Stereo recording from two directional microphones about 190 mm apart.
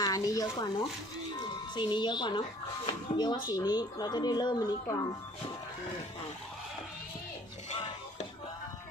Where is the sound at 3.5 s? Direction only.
20° left (ahead or behind).